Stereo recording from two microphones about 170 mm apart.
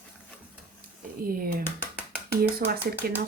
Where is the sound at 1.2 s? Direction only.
60° right (ahead or behind).